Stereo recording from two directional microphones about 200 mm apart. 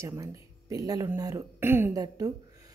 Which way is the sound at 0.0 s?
15° right (ahead or behind).